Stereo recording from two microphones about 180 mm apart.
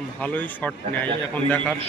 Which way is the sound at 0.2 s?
10° left (ahead or behind).